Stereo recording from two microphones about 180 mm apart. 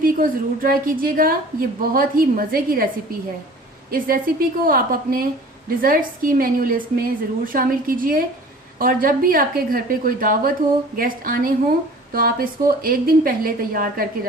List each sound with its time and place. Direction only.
0.0 s a woman's voice: 50° right (ahead or behind)
3.9 s a woman's voice: 55° right (ahead or behind)